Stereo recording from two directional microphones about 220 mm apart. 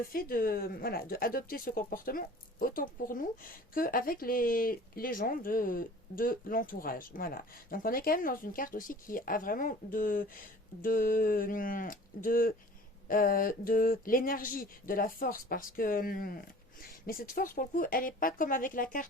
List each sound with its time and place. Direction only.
0.1 s speech: 40° left (ahead or behind)